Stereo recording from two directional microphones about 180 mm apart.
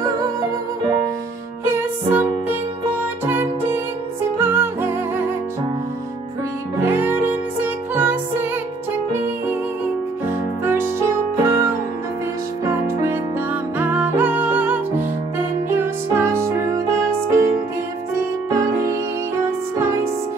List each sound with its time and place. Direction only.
0.0 s music: 20° right (ahead or behind)
1.7 s music: 10° right (ahead or behind)
6.8 s music: 10° right (ahead or behind)
10.6 s music: 15° right (ahead or behind)
12.6 s music: 15° right (ahead or behind)
19.8 s music: 15° right (ahead or behind)